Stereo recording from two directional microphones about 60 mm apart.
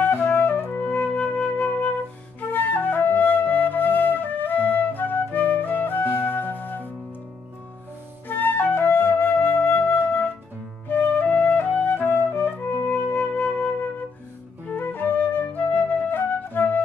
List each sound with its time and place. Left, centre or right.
0.0 s music: left
0.7 s flute: left
8.3 s flute: left
10.9 s music: left
14.7 s flute: left